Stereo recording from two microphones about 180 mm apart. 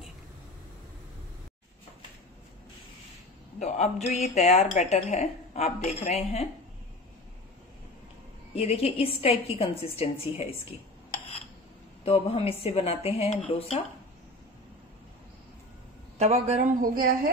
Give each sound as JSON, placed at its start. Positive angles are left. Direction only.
{"t": 3.5, "sound": "a woman's voice", "side_deg": 40}
{"t": 8.5, "sound": "a woman's voice", "side_deg": 35}
{"t": 12.0, "sound": "a woman's voice", "side_deg": 30}
{"t": 16.2, "sound": "a man's voice", "side_deg": -35}
{"t": 16.9, "sound": "speech", "side_deg": -50}